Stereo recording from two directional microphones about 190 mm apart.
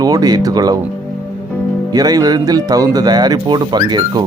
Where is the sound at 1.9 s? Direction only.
20° right (ahead or behind).